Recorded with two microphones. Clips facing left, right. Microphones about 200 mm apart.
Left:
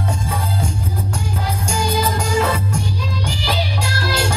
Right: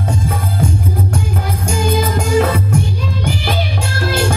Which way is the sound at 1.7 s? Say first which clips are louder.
Right 4 dB; 55° right (ahead or behind).